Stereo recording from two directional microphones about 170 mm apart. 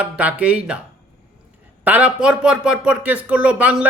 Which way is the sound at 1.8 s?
10° right (ahead or behind).